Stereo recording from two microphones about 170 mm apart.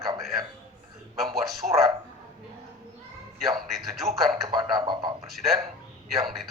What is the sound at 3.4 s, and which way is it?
Speech, centre (ahead or behind).